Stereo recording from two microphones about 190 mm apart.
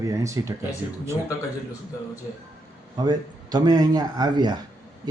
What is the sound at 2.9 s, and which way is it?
Speech, 20° right (ahead or behind).